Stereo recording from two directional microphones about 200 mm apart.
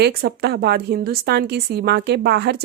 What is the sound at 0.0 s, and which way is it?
Speech, 50° right (ahead or behind).